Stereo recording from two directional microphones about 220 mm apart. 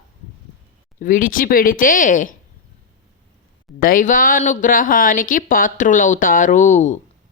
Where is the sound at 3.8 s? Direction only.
40° left (ahead or behind).